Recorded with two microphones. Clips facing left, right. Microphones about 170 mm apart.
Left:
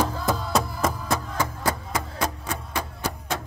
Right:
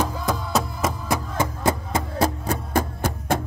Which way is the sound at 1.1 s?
20° right (ahead or behind).